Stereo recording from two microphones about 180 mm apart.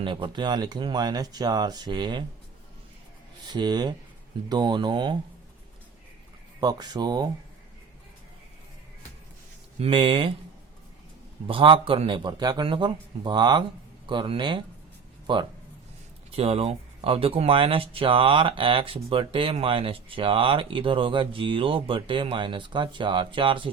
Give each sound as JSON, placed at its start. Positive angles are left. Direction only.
{"t": 0.0, "sound": "speech", "side_deg": -30}
{"t": 3.4, "sound": "speech", "side_deg": -25}
{"t": 6.6, "sound": "speech", "side_deg": -20}
{"t": 9.8, "sound": "speech", "side_deg": -25}
{"t": 11.4, "sound": "speech", "side_deg": -30}